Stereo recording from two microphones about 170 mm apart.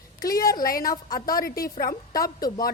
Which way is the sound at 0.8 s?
20° left (ahead or behind).